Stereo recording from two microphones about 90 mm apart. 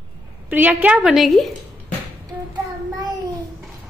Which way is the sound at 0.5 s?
20° right (ahead or behind).